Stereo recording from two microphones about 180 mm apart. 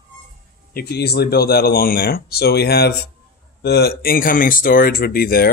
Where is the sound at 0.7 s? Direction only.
65° left (ahead or behind).